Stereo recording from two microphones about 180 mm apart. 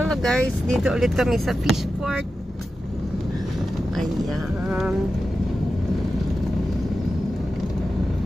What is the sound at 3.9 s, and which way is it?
Speech, centre (ahead or behind).